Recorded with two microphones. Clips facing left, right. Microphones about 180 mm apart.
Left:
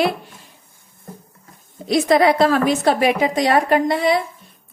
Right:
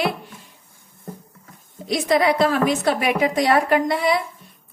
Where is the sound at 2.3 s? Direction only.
35° left (ahead or behind).